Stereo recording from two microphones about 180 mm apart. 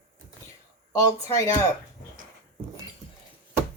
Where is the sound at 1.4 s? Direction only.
20° left (ahead or behind).